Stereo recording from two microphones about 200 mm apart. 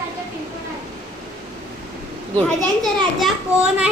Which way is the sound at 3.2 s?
5° right (ahead or behind).